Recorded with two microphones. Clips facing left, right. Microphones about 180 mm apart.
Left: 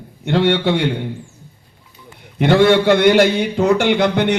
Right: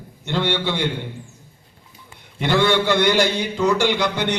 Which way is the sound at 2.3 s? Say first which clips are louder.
Left 6 dB; 60° left (ahead or behind).